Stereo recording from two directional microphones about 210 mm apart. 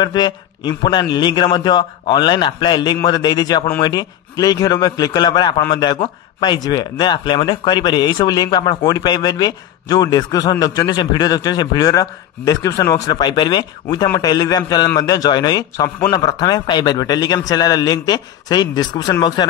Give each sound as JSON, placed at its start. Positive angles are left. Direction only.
{"t": 0.0, "sound": "a man's voice", "side_deg": 20}